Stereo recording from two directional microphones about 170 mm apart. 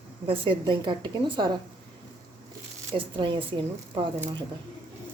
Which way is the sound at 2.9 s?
30° right (ahead or behind).